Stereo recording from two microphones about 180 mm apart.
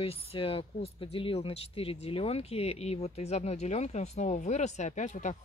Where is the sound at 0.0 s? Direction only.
30° left (ahead or behind).